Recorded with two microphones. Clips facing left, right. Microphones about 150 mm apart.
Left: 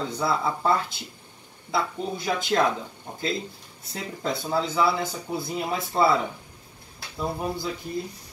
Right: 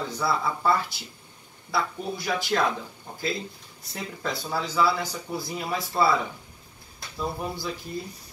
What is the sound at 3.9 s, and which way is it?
Speech, 25° left (ahead or behind).